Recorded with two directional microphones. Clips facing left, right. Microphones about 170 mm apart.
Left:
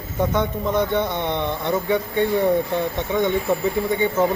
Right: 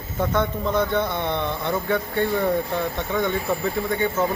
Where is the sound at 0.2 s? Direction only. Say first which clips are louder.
Left 1 dB; 15° left (ahead or behind).